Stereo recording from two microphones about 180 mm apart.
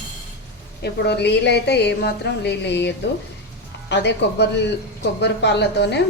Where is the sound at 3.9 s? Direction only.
70° left (ahead or behind).